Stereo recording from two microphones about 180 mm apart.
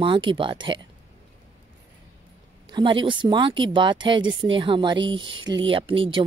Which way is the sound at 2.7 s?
25° right (ahead or behind).